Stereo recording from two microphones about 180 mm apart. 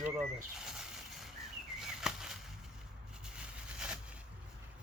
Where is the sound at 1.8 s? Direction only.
5° right (ahead or behind).